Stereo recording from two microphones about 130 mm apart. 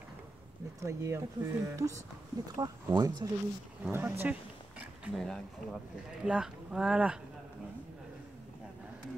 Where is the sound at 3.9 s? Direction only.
15° right (ahead or behind).